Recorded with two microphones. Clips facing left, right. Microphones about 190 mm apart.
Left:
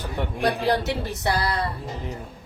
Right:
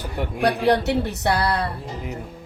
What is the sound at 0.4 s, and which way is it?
Speech, 65° right (ahead or behind).